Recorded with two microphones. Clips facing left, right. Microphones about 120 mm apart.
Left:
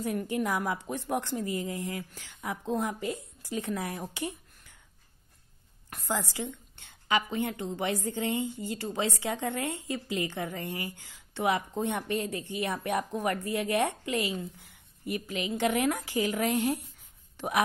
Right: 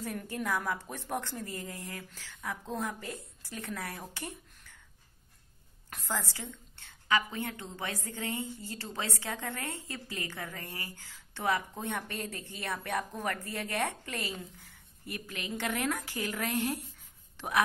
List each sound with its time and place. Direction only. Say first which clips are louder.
0.0 s a woman's voice: left 6 dB; 15° left (ahead or behind)
5.9 s a woman's voice: left 4 dB; 10° left (ahead or behind)